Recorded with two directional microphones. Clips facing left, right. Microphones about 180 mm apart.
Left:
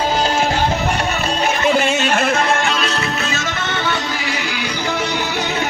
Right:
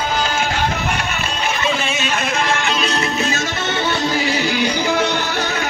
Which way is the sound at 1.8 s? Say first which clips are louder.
Left 5 dB; 60° left (ahead or behind).